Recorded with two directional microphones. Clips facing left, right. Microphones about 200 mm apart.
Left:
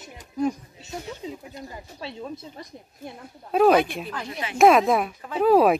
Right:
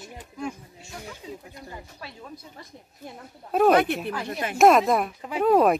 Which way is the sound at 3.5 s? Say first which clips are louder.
Left 1 dB; centre (ahead or behind).